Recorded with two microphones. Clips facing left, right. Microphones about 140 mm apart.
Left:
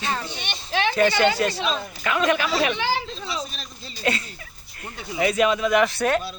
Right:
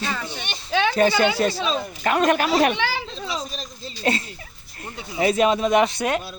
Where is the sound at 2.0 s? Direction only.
45° right (ahead or behind).